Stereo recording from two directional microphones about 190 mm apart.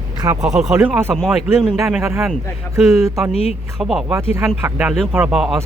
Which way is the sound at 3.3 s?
35° left (ahead or behind).